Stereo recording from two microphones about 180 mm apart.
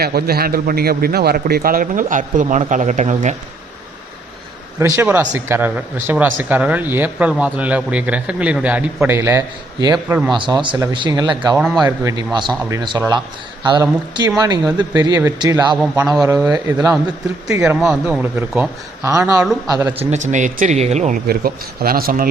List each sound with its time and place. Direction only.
0.0 s a man's voice: 60° right (ahead or behind); by 3.3 s 40° right (ahead or behind)
4.8 s a man's voice: 10° right (ahead or behind)
10.3 s speech: 25° right (ahead or behind)
11.5 s a man's voice: centre (ahead or behind)
11.9 s speech: 20° right (ahead or behind)
15.8 s a man's voice: centre (ahead or behind)
16.2 s speech: 20° right (ahead or behind)
17.5 s speech: 5° right (ahead or behind)
19.6 s speech: 20° right (ahead or behind)
20.0 s speech: 40° right (ahead or behind)
21.2 s speech: 55° right (ahead or behind)